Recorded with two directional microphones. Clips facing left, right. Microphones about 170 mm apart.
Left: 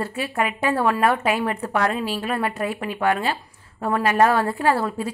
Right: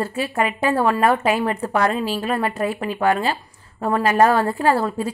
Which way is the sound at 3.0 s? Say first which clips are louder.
Right 2 dB; 35° right (ahead or behind).